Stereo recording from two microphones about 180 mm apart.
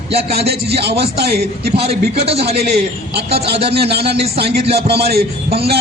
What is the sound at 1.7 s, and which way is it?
Speech, 35° right (ahead or behind).